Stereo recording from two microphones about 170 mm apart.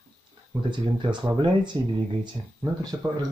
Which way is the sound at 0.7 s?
25° right (ahead or behind).